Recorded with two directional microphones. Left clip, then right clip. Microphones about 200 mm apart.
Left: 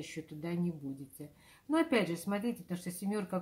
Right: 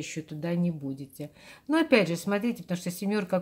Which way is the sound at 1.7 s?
35° right (ahead or behind).